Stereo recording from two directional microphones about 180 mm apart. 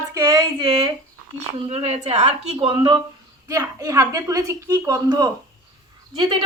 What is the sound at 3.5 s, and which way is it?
A woman's voice, 20° right (ahead or behind).